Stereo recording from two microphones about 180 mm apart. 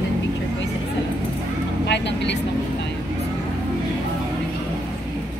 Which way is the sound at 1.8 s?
75° left (ahead or behind).